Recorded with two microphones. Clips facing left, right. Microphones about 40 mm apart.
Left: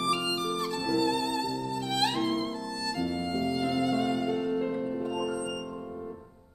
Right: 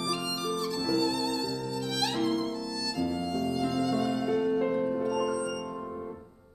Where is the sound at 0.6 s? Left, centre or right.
Left.